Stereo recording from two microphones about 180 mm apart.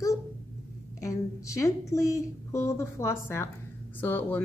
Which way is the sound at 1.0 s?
15° left (ahead or behind).